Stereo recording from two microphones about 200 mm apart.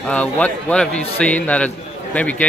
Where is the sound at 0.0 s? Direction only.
5° left (ahead or behind).